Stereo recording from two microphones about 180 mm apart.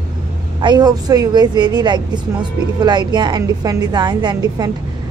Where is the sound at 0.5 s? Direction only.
25° right (ahead or behind).